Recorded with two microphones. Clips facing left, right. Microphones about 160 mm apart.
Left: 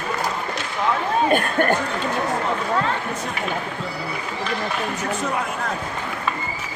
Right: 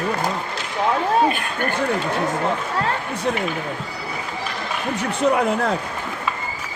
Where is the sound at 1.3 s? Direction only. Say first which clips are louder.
Left 5 dB; 45° left (ahead or behind).